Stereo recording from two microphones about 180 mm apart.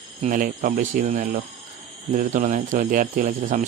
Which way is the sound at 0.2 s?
45° right (ahead or behind).